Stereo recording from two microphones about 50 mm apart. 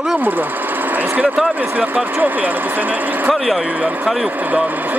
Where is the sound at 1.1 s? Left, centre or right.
Right.